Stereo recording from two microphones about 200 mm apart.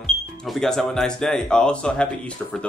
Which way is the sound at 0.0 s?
5° left (ahead or behind).